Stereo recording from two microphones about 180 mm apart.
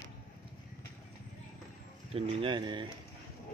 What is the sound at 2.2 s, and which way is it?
Speech, 25° right (ahead or behind).